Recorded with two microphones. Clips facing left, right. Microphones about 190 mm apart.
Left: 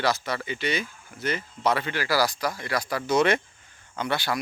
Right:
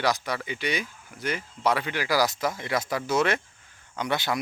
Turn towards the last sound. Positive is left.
turn(degrees=-20)  # may be behind; listen again after turning